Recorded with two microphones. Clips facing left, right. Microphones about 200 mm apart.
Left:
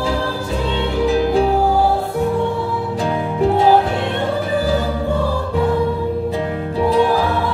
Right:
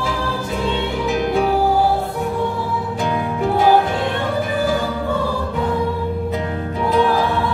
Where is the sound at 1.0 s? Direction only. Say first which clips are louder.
Left 4 dB; 35° left (ahead or behind).